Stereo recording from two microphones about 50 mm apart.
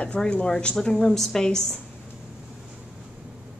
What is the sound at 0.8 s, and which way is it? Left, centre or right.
A woman's voice, centre.